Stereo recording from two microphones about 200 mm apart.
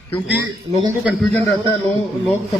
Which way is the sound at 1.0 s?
Centre (ahead or behind).